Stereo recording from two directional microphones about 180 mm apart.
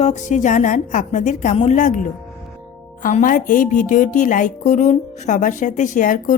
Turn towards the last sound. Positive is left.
turn(degrees=50)  # may be behind; listen again after turning